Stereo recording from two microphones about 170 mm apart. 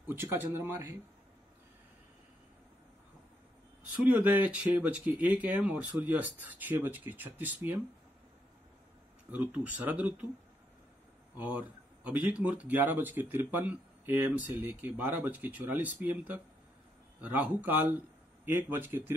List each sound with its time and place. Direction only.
0.0 s speech: 10° right (ahead or behind)
4.1 s speech: 10° right (ahead or behind)
9.3 s speech: 10° right (ahead or behind)
11.3 s speech: 10° right (ahead or behind)